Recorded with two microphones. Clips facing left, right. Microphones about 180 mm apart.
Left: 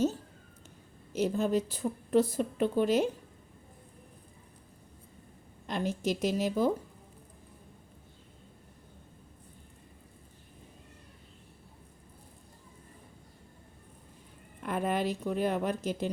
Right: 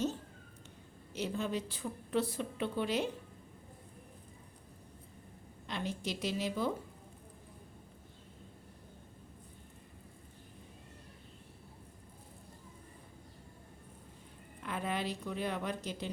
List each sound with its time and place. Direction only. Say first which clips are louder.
1.1 s a woman's voice: left 8 dB; 45° left (ahead or behind)
5.6 s a woman's voice: left 7 dB; 45° left (ahead or behind)
14.6 s a woman's voice: left 7 dB; 50° left (ahead or behind)